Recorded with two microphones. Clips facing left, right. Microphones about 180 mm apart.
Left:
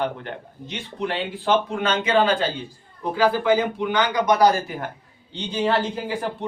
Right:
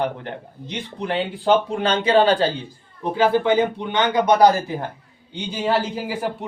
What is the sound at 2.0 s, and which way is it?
Speech, 35° right (ahead or behind).